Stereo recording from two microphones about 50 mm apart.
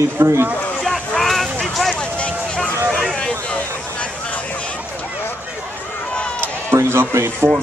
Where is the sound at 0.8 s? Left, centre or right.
Centre.